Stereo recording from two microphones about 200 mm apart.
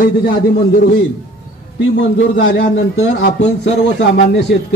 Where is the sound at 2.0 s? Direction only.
65° left (ahead or behind).